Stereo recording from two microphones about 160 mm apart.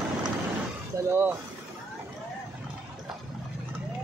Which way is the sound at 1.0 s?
15° right (ahead or behind).